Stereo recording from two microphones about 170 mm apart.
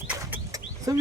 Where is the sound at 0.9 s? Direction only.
20° right (ahead or behind).